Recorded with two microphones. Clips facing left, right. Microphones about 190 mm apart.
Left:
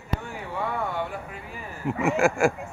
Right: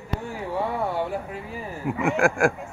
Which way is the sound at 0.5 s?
35° right (ahead or behind).